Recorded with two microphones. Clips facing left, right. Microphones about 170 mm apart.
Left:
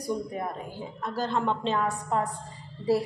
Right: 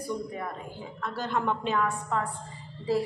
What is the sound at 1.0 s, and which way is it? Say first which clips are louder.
A woman's voice: left 2 dB; 35° left (ahead or behind).